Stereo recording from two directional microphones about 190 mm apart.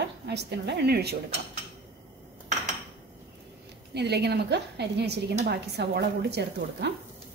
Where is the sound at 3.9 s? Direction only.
60° right (ahead or behind).